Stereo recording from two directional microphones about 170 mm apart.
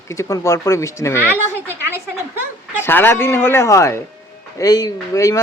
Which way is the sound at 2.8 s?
15° left (ahead or behind).